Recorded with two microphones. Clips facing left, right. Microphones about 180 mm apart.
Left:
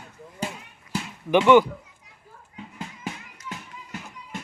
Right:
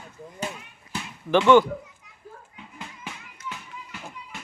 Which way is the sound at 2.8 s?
40° left (ahead or behind).